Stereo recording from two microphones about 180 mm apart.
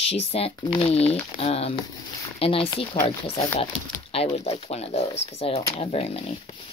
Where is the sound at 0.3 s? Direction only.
30° left (ahead or behind).